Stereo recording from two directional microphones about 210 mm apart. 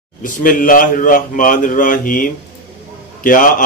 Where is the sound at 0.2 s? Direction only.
40° left (ahead or behind).